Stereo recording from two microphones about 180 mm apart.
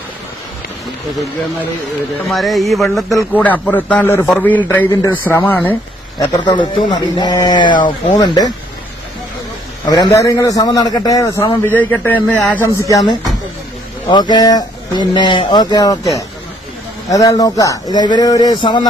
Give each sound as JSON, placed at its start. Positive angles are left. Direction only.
{"t": 2.2, "sound": "a man's voice", "side_deg": 0}
{"t": 6.1, "sound": "speech", "side_deg": 20}
{"t": 9.8, "sound": "a man's voice", "side_deg": 20}
{"t": 12.9, "sound": "speech", "side_deg": 20}
{"t": 17.1, "sound": "speech", "side_deg": 20}